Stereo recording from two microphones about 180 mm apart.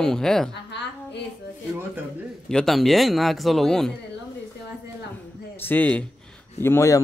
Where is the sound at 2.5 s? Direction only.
Centre (ahead or behind).